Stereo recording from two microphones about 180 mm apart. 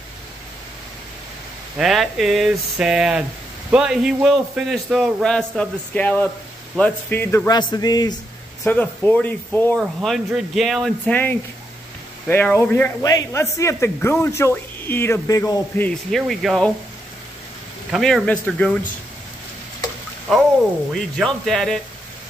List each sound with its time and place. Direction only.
1.8 s a man's voice: centre (ahead or behind); by 8.2 s 20° left (ahead or behind)
8.6 s speech: 10° left (ahead or behind)
9.9 s a man's voice: centre (ahead or behind)
17.9 s a man's voice: centre (ahead or behind)
20.9 s a man's voice: centre (ahead or behind)